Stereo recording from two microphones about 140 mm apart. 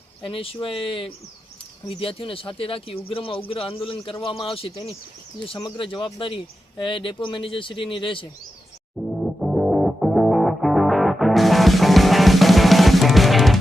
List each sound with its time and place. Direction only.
0.2 s a man's voice: 40° left (ahead or behind)
9.0 s music: centre (ahead or behind)